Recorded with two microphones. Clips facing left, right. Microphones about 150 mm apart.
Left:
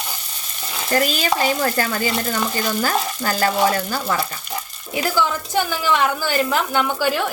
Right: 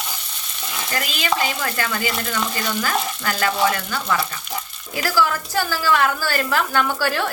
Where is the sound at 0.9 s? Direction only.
40° left (ahead or behind).